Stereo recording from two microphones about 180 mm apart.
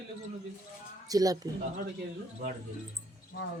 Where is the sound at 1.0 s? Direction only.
20° right (ahead or behind).